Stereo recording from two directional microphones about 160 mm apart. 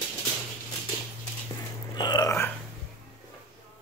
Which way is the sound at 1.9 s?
25° left (ahead or behind).